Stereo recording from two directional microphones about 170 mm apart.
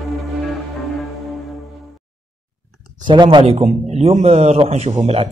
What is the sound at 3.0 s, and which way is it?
A man's voice, 25° right (ahead or behind).